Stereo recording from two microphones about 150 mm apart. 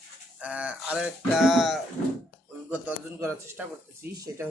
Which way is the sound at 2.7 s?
15° right (ahead or behind).